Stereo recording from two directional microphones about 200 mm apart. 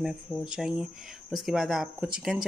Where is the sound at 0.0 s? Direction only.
Centre (ahead or behind).